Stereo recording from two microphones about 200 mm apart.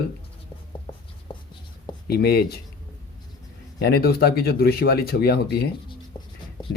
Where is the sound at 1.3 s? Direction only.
25° left (ahead or behind).